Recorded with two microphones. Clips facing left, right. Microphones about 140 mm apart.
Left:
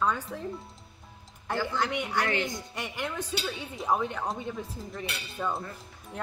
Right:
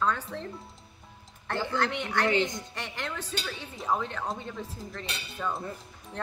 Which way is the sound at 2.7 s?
10° left (ahead or behind).